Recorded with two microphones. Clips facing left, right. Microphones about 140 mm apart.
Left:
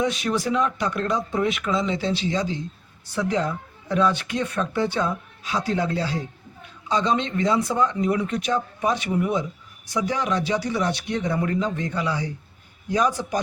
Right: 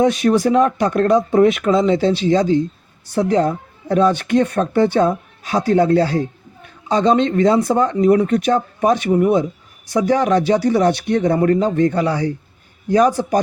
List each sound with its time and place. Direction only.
0.0 s speech: 50° right (ahead or behind)